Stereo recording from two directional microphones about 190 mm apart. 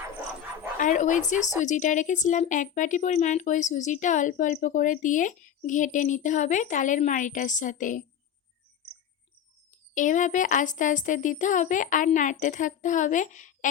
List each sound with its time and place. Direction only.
0.8 s a woman's voice: 40° left (ahead or behind)
9.9 s a woman's voice: 40° left (ahead or behind)